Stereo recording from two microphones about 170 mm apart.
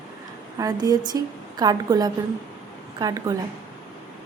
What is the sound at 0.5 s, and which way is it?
A woman's voice, 20° right (ahead or behind).